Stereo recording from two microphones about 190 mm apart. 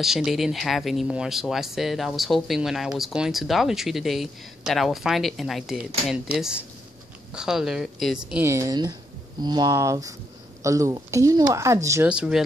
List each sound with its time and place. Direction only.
0.0 s speech: centre (ahead or behind)